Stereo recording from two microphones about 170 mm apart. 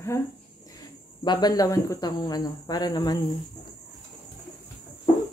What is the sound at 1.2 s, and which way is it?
Speech, 25° left (ahead or behind).